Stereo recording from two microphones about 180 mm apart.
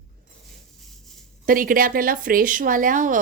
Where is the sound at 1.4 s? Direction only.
50° right (ahead or behind).